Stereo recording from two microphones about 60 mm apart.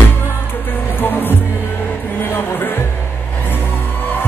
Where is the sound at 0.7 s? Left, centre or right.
Left.